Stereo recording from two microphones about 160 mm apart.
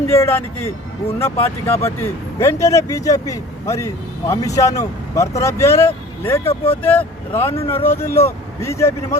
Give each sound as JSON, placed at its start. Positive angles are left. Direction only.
{"t": 0.1, "sound": "speech", "side_deg": 15}